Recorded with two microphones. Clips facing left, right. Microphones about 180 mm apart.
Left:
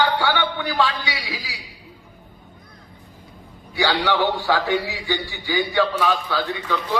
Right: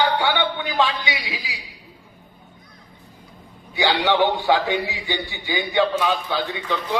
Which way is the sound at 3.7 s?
20° right (ahead or behind).